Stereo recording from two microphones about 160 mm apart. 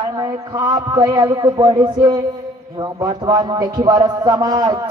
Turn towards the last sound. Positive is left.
turn(degrees=-25)  # may be behind; listen again after turning